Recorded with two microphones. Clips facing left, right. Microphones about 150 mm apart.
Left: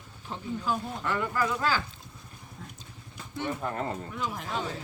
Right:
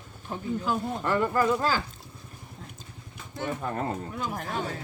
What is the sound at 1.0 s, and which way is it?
Speech, 40° right (ahead or behind).